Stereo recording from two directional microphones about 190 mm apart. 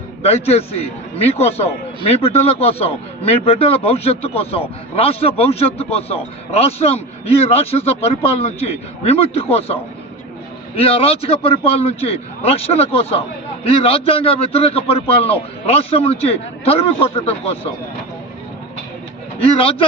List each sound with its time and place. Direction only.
0.2 s a man's voice: 35° left (ahead or behind)
10.8 s a man's voice: 30° left (ahead or behind)
19.4 s speech: 30° left (ahead or behind)